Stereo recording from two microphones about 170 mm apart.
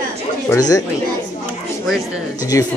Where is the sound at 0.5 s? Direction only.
20° left (ahead or behind).